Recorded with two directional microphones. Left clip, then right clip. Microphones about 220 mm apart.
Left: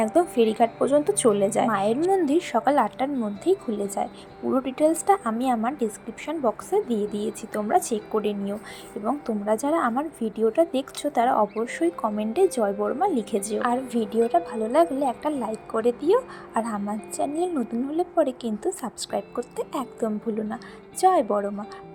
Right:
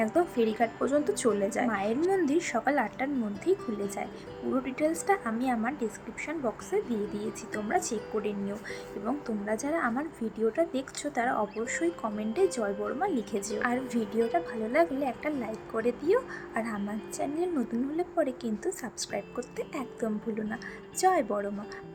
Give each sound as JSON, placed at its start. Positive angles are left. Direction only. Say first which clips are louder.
{"t": 0.0, "sound": "a woman's voice", "louder": "left 6 dB", "side_deg": 20}